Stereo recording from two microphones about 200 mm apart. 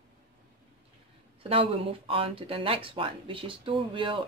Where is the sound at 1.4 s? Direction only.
25° right (ahead or behind).